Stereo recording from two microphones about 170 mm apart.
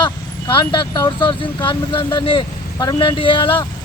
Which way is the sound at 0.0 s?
25° left (ahead or behind).